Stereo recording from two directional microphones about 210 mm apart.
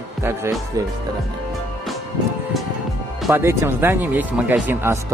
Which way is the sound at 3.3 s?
15° right (ahead or behind).